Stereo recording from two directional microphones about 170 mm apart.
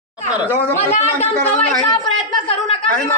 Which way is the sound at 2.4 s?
35° left (ahead or behind).